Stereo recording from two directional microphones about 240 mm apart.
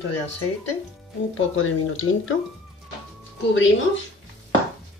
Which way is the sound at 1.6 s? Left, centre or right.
Left.